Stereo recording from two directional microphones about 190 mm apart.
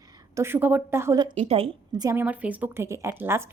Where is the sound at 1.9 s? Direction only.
20° right (ahead or behind).